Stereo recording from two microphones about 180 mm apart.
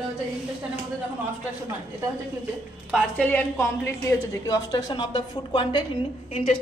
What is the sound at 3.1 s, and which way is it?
A woman's voice, 10° left (ahead or behind).